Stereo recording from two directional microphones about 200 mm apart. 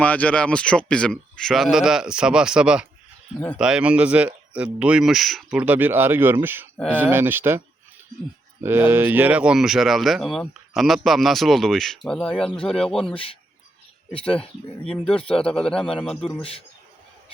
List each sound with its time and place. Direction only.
0.0 s speech: 5° left (ahead or behind); by 7.6 s 10° right (ahead or behind)
8.6 s speech: 10° right (ahead or behind)
14.8 s speech: 5° left (ahead or behind)
16.4 s a man's voice: 30° left (ahead or behind)